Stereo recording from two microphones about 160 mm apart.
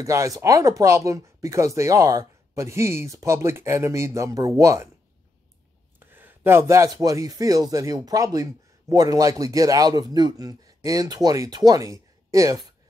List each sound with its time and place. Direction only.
0.0 s speech: 20° right (ahead or behind)
5.9 s speech: 15° right (ahead or behind)